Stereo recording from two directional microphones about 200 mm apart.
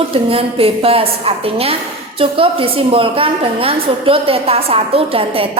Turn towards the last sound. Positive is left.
turn(degrees=-30)  # may be behind; listen again after turning